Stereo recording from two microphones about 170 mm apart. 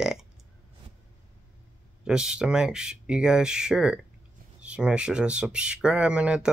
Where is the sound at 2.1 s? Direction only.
5° right (ahead or behind).